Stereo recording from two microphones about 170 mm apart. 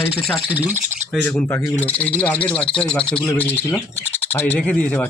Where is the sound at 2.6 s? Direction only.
30° left (ahead or behind).